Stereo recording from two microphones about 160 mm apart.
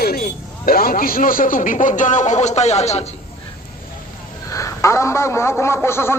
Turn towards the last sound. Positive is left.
turn(degrees=15)  # may be behind; listen again after turning